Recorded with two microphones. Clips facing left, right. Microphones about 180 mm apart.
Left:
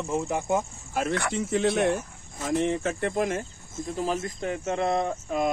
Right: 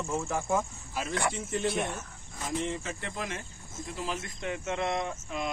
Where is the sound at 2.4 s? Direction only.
65° left (ahead or behind).